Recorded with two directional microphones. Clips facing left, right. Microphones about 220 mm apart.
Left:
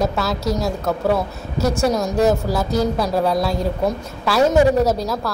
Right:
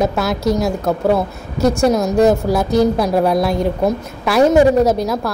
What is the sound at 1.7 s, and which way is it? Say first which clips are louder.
A woman's voice: right 4 dB; 15° right (ahead or behind).